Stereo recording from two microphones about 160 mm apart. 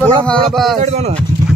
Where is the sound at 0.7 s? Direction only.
45° right (ahead or behind).